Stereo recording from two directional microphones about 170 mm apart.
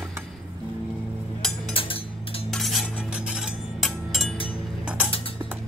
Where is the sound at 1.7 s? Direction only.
35° left (ahead or behind).